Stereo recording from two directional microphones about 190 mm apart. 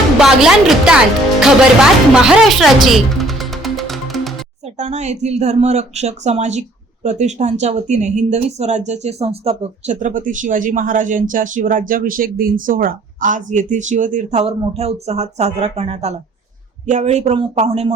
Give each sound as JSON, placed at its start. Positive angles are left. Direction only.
{"t": 0.2, "sound": "speech", "side_deg": -5}
{"t": 4.8, "sound": "speech", "side_deg": -35}